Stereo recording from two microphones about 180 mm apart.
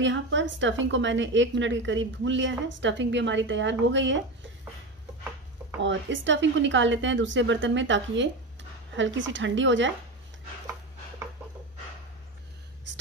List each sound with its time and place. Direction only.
0.0 s a woman's voice: 90° right
5.8 s a woman's voice: 90° right